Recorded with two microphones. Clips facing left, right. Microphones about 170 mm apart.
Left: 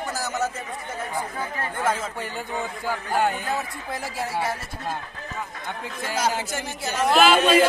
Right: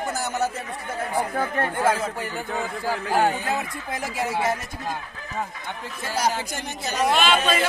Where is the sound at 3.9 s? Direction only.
20° right (ahead or behind).